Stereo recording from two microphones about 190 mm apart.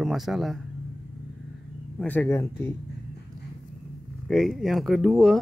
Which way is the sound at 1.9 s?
10° left (ahead or behind).